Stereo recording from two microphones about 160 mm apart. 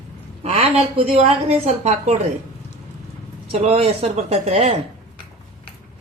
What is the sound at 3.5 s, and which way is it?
Speech, 40° right (ahead or behind).